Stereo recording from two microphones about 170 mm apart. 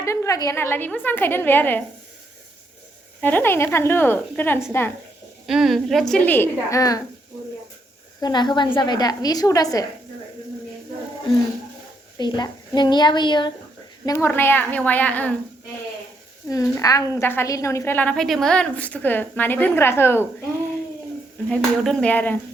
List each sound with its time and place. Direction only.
0.0 s a woman's voice: 15° left (ahead or behind)
3.2 s a woman's voice: 10° left (ahead or behind)
5.5 s a woman's voice: centre (ahead or behind); by 7.0 s 20° left (ahead or behind)
8.2 s a woman's voice: 25° left (ahead or behind)
12.1 s a woman's voice: 25° left (ahead or behind)
14.0 s a woman's voice: 15° left (ahead or behind)
16.5 s a woman's voice: 20° left (ahead or behind)
21.5 s a woman's voice: 5° left (ahead or behind)